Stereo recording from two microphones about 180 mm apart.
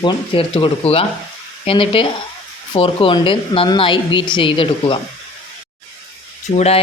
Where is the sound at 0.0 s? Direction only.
30° left (ahead or behind).